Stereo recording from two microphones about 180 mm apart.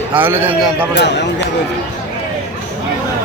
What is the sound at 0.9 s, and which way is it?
Speech, 75° left (ahead or behind).